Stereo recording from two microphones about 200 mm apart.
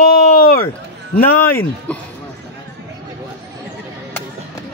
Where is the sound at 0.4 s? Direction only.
45° left (ahead or behind).